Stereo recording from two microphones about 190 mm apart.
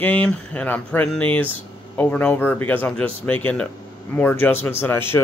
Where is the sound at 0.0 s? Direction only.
10° left (ahead or behind).